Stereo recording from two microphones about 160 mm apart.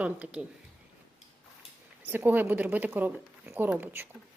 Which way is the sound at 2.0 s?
10° right (ahead or behind).